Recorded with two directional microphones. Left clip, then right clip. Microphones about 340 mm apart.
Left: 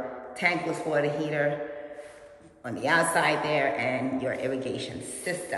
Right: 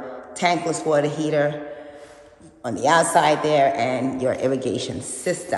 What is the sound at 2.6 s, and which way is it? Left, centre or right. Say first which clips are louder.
A man's voice: right 7 dB; right.